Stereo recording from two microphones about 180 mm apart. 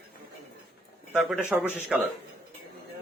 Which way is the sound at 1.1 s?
5° right (ahead or behind).